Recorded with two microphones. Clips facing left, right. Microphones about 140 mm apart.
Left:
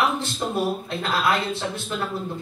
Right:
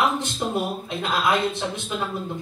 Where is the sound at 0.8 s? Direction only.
15° right (ahead or behind).